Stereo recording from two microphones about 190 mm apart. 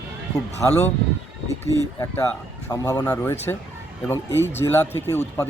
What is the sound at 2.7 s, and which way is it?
Speech, 20° left (ahead or behind).